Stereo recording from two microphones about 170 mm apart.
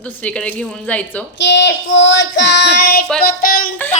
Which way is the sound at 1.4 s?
90° left.